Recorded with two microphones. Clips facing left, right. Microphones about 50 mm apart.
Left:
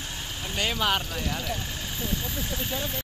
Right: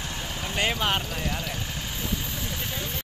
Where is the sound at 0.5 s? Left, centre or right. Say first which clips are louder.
Even; right.